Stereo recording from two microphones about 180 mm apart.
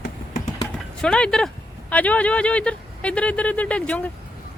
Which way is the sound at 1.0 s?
5° left (ahead or behind).